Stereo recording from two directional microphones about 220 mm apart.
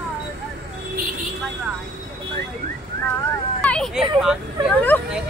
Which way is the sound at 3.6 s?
5° left (ahead or behind).